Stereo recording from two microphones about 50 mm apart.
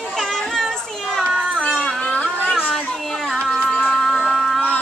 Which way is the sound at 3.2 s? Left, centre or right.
Centre.